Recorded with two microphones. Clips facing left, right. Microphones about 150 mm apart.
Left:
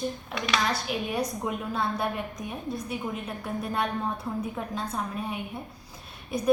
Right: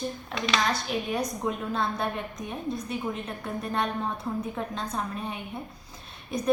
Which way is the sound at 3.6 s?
5° left (ahead or behind).